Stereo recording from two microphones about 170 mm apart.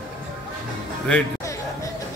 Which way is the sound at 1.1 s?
5° left (ahead or behind).